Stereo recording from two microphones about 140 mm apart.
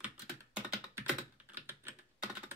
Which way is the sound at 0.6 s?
10° right (ahead or behind).